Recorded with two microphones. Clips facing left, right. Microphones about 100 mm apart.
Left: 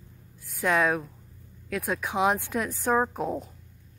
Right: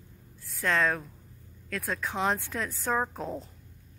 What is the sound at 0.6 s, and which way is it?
Speech, 10° left (ahead or behind).